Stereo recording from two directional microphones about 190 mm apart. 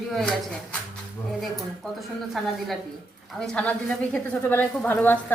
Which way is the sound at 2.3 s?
Centre (ahead or behind).